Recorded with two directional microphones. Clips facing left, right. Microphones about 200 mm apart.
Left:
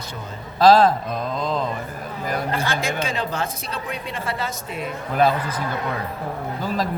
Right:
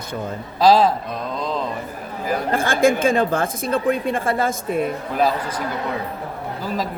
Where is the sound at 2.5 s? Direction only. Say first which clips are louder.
Right 7 dB; 50° right (ahead or behind).